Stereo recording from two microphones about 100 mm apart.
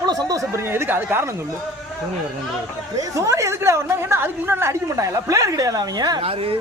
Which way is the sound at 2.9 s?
35° right (ahead or behind).